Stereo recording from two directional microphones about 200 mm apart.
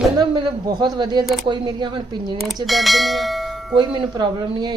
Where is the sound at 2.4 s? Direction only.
Centre (ahead or behind).